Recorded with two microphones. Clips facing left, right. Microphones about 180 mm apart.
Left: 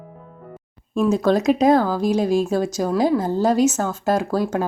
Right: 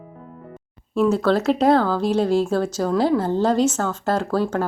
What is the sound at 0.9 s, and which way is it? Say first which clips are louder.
Speech: even; 15° left (ahead or behind).